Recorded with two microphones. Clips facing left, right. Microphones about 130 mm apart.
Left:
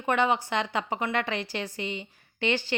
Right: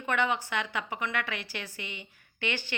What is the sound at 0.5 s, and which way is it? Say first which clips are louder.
A woman's voice: left 5 dB; 35° left (ahead or behind).